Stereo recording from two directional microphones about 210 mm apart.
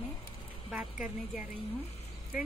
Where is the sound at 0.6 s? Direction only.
5° right (ahead or behind).